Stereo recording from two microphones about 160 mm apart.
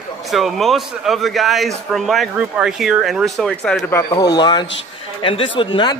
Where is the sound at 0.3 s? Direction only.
Centre (ahead or behind).